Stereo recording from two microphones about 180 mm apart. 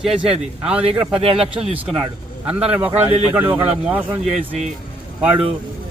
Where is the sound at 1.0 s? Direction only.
35° right (ahead or behind).